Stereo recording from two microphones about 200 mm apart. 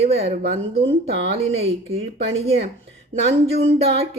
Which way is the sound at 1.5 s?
30° right (ahead or behind).